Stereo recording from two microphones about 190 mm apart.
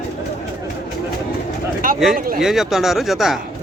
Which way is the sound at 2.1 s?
50° right (ahead or behind).